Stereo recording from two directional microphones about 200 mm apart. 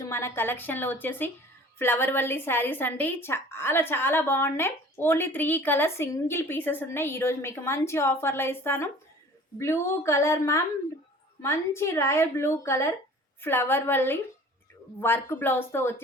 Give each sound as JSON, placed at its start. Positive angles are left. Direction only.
{"t": 0.0, "sound": "a woman's voice", "side_deg": 15}